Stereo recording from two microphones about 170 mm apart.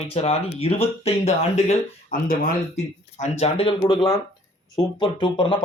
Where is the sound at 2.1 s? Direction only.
60° left (ahead or behind).